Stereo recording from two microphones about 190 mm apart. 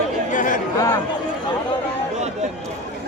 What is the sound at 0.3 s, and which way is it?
Chatter, 45° left (ahead or behind).